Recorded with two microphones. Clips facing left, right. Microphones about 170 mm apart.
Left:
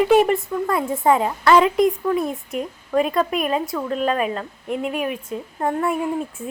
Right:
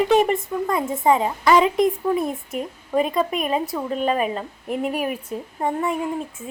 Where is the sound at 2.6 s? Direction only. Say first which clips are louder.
Left 1 dB; centre (ahead or behind).